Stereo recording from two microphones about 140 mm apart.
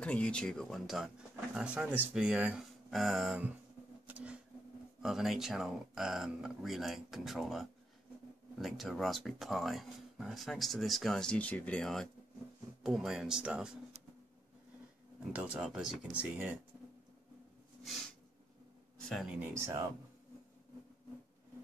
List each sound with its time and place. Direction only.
0.0 s speech: 10° left (ahead or behind)
4.1 s a sound: 10° right (ahead or behind)
5.0 s speech: centre (ahead or behind)
15.3 s speech: 5° right (ahead or behind)
18.9 s a sound: 5° left (ahead or behind)
19.4 s speech: 20° right (ahead or behind)